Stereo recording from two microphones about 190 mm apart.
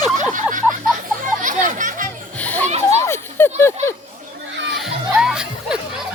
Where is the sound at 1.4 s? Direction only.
40° right (ahead or behind).